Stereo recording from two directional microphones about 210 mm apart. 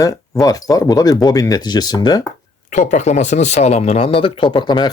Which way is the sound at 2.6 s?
35° left (ahead or behind).